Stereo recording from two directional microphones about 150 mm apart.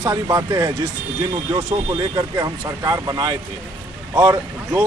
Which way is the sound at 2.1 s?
25° right (ahead or behind).